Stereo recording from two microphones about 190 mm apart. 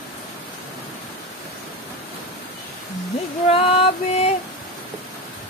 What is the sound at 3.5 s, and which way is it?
Speech, 30° left (ahead or behind).